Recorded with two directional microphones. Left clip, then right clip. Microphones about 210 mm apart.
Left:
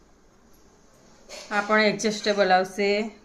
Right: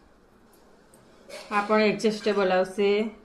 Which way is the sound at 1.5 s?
25° left (ahead or behind).